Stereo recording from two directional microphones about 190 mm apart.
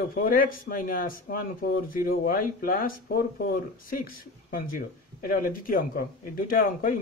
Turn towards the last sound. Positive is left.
turn(degrees=50)  # may be behind; listen again after turning